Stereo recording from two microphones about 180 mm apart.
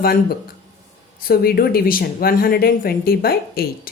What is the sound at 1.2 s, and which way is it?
Speech, 55° left (ahead or behind).